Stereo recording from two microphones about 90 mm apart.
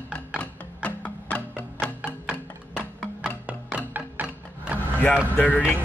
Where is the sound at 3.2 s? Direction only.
15° right (ahead or behind).